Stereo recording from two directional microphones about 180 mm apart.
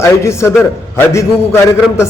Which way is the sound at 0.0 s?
15° left (ahead or behind).